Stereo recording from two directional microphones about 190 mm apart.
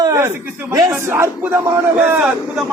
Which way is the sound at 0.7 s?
15° right (ahead or behind).